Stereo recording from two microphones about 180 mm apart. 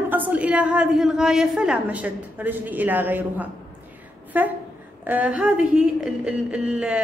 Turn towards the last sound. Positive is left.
turn(degrees=-5)  # may be behind; listen again after turning